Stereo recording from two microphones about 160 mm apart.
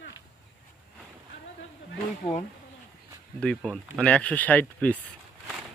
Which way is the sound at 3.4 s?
5° left (ahead or behind).